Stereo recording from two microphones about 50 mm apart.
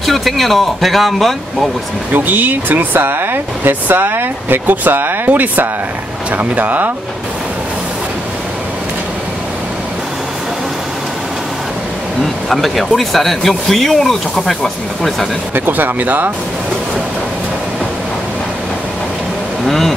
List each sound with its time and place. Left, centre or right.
0.0 s speech: centre
2.1 s speech: right
12.4 s speech: centre
15.5 s speech: right
19.6 s speech: centre